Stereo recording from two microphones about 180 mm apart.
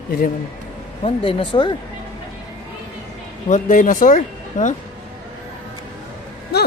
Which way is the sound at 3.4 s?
45° left (ahead or behind).